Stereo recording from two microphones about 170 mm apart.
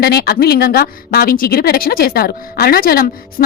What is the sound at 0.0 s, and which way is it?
Speech, 65° left (ahead or behind).